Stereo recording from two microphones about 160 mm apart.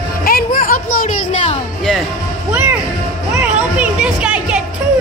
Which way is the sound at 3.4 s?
5° right (ahead or behind).